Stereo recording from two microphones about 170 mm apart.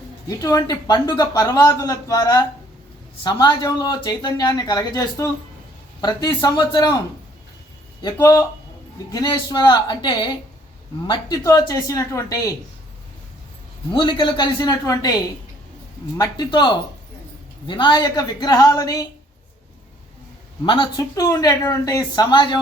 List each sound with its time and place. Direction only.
0.3 s speech: 20° left (ahead or behind)
8.0 s speech: 20° left (ahead or behind)
13.9 s speech: 25° left (ahead or behind)
20.7 s speech: 30° left (ahead or behind)